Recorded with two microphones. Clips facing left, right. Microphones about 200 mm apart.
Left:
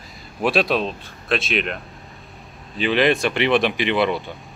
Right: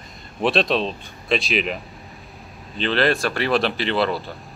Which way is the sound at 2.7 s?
15° left (ahead or behind).